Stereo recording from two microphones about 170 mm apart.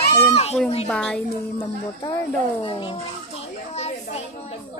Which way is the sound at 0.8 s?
5° left (ahead or behind).